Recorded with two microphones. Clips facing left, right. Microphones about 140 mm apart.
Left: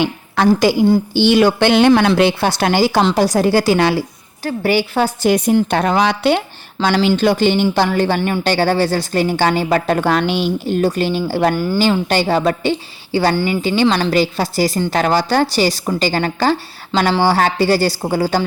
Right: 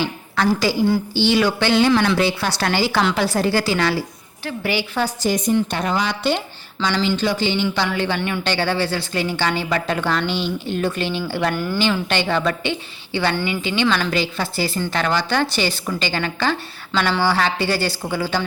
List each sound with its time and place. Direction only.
0.0 s a woman's voice: 50° left (ahead or behind); by 6.4 s 80° left
6.7 s speech: 45° left (ahead or behind)
10.2 s a woman's voice: 10° left (ahead or behind)
10.7 s a woman's voice: 40° left (ahead or behind)